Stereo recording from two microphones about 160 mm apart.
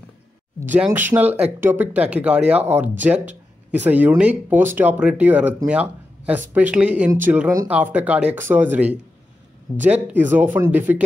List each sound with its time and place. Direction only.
0.6 s speech: 10° right (ahead or behind)